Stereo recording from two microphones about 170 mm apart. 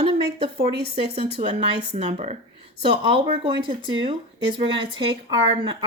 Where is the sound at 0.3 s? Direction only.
35° right (ahead or behind).